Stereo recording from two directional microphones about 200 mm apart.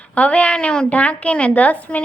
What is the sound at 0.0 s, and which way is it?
A woman's voice, 5° left (ahead or behind).